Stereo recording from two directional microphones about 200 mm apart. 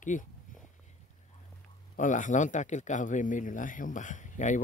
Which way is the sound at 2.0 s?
40° left (ahead or behind).